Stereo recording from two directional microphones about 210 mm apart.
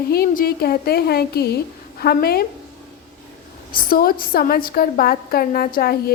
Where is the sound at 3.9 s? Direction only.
45° left (ahead or behind).